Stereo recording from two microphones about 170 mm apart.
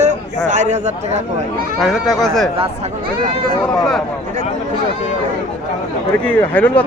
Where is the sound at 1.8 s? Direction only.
Centre (ahead or behind).